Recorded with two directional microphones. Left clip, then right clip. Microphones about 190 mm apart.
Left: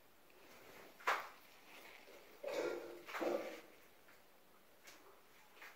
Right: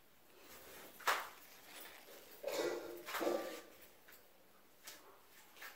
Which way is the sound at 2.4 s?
15° right (ahead or behind).